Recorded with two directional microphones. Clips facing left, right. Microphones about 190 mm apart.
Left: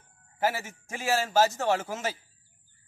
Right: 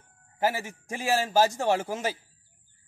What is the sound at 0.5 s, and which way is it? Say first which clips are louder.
A man's voice: right 2 dB; 15° right (ahead or behind).